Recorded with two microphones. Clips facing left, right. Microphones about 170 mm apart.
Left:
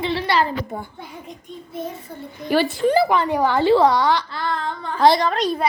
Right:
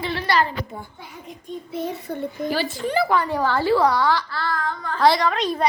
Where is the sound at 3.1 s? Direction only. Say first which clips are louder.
Left 2 dB; 20° left (ahead or behind).